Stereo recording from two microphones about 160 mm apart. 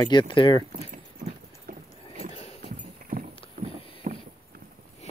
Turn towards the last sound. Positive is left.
turn(degrees=-55)  # may be behind; listen again after turning